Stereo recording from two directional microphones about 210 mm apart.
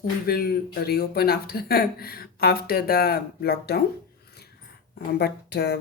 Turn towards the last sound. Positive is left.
turn(degrees=50)  # may be behind; listen again after turning